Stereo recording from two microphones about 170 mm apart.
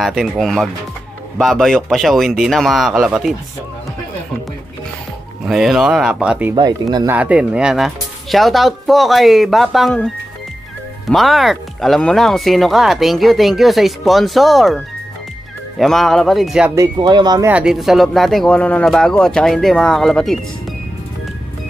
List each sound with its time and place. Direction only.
0.0 s speech: centre (ahead or behind)
5.4 s speech: centre (ahead or behind)
6.5 s speech: 25° right (ahead or behind)
7.1 s speech: 10° right (ahead or behind)
15.8 s speech: centre (ahead or behind)
16.7 s speech: 20° right (ahead or behind)
17.5 s speech: 5° right (ahead or behind)